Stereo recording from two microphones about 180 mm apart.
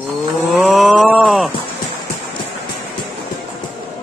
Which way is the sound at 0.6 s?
5° right (ahead or behind).